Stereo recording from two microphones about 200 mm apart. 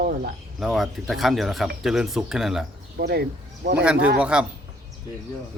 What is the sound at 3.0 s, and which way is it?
Speech, 55° right (ahead or behind).